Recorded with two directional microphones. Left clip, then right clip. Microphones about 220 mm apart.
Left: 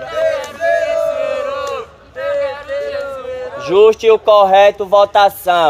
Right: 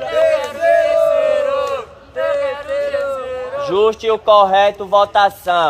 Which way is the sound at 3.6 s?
50° left (ahead or behind).